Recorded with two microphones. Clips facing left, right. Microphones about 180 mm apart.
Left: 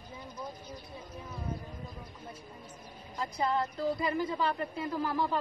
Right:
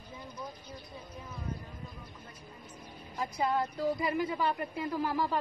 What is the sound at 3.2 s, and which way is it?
A woman's voice, 10° right (ahead or behind).